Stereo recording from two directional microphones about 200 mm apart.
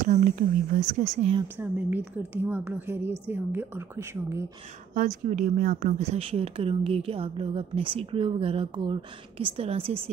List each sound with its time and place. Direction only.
0.0 s speech: 40° right (ahead or behind)
1.6 s a woman's voice: 10° right (ahead or behind)
4.9 s speech: 40° right (ahead or behind)